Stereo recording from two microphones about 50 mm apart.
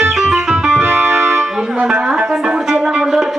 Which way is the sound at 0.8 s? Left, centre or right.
Right.